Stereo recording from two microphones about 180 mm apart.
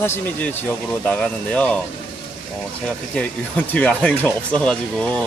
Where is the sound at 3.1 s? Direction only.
10° left (ahead or behind).